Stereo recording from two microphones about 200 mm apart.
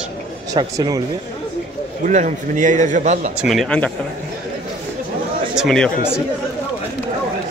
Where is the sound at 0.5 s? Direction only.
20° right (ahead or behind).